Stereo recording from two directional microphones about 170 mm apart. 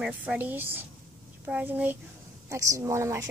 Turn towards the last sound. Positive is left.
turn(degrees=-15)  # may be behind; listen again after turning